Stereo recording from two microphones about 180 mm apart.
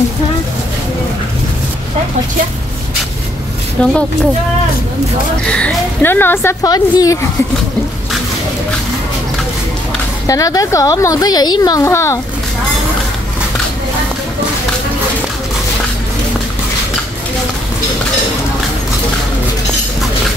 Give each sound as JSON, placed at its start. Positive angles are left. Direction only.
{"t": 3.8, "sound": "a woman's voice", "side_deg": 5}
{"t": 5.5, "sound": "a woman's voice", "side_deg": 5}
{"t": 10.2, "sound": "speech", "side_deg": 20}